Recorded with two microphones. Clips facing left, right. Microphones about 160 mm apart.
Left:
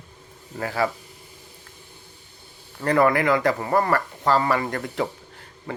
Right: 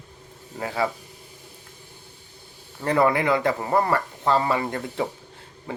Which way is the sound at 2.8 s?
15° right (ahead or behind).